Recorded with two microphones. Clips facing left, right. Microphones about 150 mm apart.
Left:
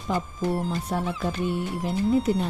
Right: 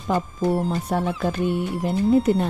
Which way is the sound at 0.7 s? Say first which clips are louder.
Right 4 dB; 55° right (ahead or behind).